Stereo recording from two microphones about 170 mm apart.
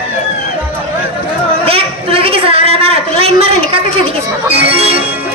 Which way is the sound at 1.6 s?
35° right (ahead or behind).